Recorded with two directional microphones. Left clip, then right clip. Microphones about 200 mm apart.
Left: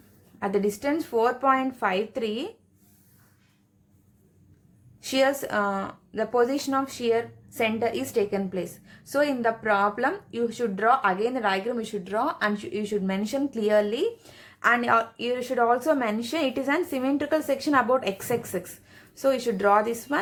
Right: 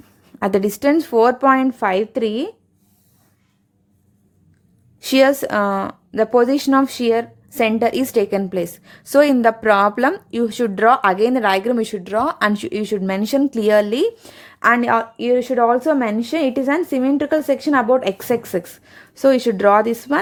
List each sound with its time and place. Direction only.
0.3 s speech: 50° right (ahead or behind)
4.9 s speech: 45° right (ahead or behind)